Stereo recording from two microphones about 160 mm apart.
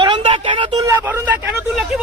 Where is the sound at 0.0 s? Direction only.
30° right (ahead or behind).